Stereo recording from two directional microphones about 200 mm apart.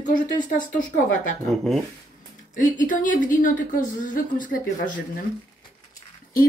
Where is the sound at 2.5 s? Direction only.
40° left (ahead or behind).